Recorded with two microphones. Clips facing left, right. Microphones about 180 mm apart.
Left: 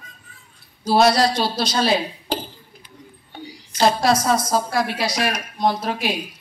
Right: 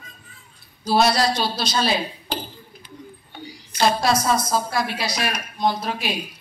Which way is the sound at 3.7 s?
35° left (ahead or behind).